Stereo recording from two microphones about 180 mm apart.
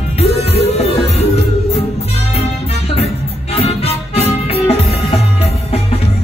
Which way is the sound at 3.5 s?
35° left (ahead or behind).